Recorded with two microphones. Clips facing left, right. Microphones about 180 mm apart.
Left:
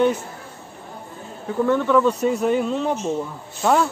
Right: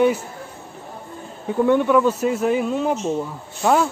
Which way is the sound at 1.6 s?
15° right (ahead or behind).